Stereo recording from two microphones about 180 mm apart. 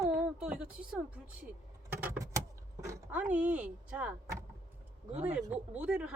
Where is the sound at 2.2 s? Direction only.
15° right (ahead or behind).